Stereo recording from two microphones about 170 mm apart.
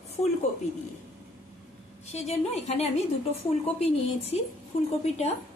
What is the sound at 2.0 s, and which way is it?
A woman's voice, 40° left (ahead or behind).